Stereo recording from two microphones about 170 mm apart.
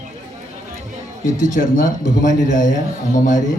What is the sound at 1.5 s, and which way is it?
A man's voice, 50° left (ahead or behind).